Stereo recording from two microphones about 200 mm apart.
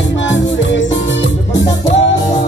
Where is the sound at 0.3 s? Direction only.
65° left (ahead or behind).